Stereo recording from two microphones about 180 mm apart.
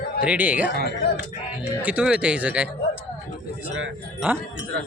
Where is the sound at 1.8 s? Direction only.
5° right (ahead or behind).